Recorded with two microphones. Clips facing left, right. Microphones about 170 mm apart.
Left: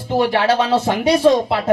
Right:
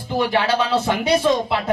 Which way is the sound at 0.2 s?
40° left (ahead or behind).